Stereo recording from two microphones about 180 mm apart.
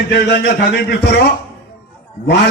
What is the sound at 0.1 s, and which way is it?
Music, 65° left (ahead or behind).